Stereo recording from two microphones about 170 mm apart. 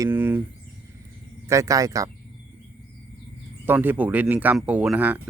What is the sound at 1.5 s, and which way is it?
Speech, 20° right (ahead or behind).